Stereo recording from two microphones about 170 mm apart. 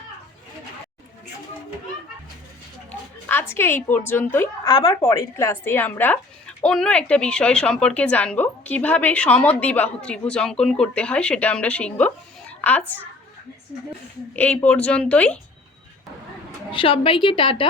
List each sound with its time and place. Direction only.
3.5 s a woman's voice: 15° left (ahead or behind)
4.7 s a woman's voice: 30° left (ahead or behind)
5.0 s a woman's voice: 15° left (ahead or behind)
14.3 s a woman's voice: 10° left (ahead or behind)
16.7 s a woman's voice: 30° left (ahead or behind)